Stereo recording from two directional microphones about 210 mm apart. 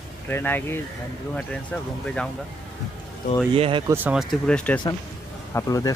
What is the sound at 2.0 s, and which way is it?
Speech, 5° left (ahead or behind).